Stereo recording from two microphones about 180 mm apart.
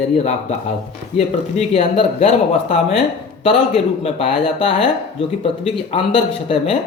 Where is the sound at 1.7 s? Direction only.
35° left (ahead or behind).